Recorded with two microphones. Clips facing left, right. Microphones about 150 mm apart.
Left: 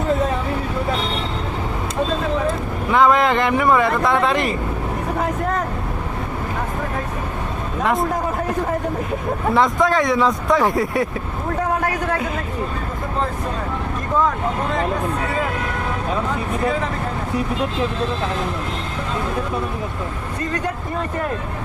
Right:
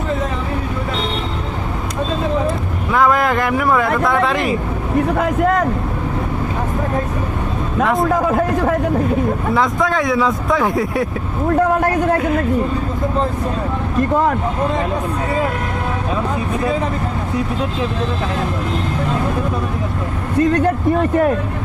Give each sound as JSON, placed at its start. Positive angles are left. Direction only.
{"t": 2.9, "sound": "speech", "side_deg": 0}
{"t": 8.1, "sound": "speech", "side_deg": -75}
{"t": 9.6, "sound": "speech", "side_deg": 0}